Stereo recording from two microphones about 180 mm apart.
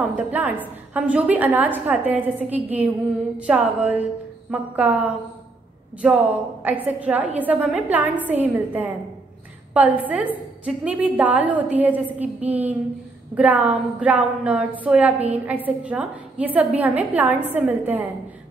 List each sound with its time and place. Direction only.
0.0 s a woman's voice: 10° right (ahead or behind)